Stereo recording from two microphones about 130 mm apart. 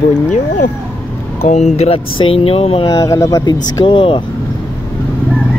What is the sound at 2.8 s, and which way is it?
Speech, 25° left (ahead or behind).